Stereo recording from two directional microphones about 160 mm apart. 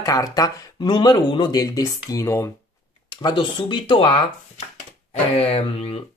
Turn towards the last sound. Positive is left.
turn(degrees=40)  # may be behind; listen again after turning